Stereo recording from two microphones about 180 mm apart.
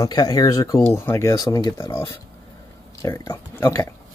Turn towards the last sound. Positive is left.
turn(degrees=15)  # may be behind; listen again after turning